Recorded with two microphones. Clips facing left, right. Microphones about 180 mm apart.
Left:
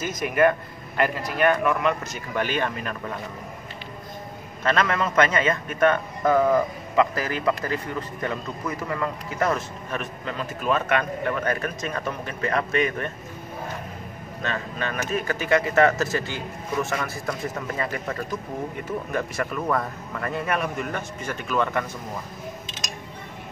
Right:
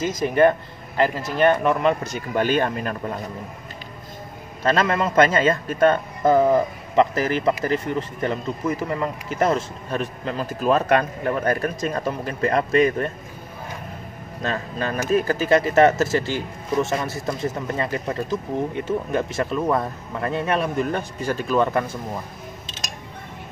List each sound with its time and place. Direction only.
0.0 s speech: 30° right (ahead or behind)
4.6 s a man's voice: 30° right (ahead or behind)
14.4 s a man's voice: 35° right (ahead or behind)